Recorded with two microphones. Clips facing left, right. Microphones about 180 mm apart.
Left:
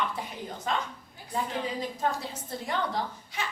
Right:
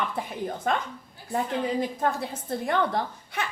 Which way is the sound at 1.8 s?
55° right (ahead or behind).